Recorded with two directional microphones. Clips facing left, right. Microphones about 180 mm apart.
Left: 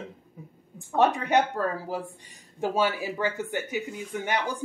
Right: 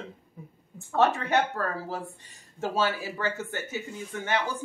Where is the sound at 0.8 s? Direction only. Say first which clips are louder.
Left 1 dB; 15° left (ahead or behind).